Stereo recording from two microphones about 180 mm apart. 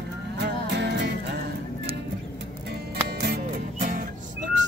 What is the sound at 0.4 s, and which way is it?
Music, 70° right (ahead or behind).